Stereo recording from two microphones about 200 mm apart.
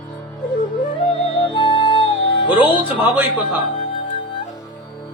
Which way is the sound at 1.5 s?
25° left (ahead or behind).